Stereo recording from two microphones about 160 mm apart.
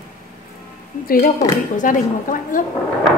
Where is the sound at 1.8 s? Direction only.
55° left (ahead or behind).